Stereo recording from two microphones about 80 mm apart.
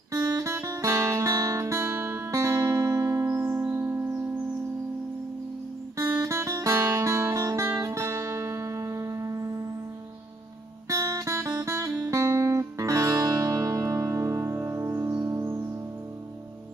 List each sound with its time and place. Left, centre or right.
0.1 s guitar: right
5.9 s music: right
10.9 s music: right